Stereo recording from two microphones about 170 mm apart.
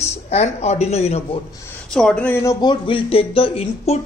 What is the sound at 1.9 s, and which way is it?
Speech, 5° left (ahead or behind).